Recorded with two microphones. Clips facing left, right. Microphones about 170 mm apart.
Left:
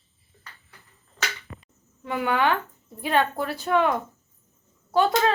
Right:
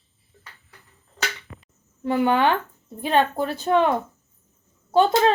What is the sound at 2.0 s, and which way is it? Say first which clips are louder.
Speech: right 4 dB; 30° right (ahead or behind).